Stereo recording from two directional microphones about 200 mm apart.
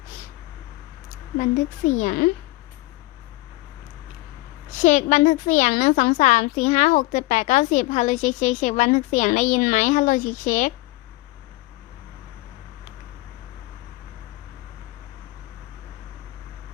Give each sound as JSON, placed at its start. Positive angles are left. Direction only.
{"t": 1.4, "sound": "a woman's voice", "side_deg": 40}
{"t": 4.7, "sound": "a woman's voice", "side_deg": 40}